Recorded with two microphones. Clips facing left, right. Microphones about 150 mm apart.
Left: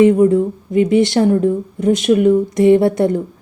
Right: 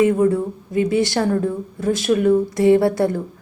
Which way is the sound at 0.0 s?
20° left (ahead or behind).